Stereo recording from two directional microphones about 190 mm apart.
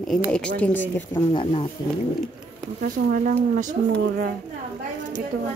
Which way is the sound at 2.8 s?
45° right (ahead or behind).